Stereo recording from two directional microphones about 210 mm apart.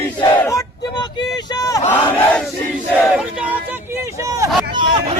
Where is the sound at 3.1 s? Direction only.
5° right (ahead or behind).